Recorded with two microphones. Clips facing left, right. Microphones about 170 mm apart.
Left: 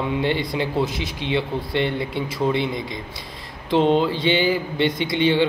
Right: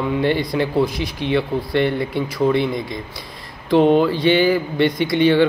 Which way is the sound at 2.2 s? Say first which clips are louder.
Right 5 dB; 25° left (ahead or behind).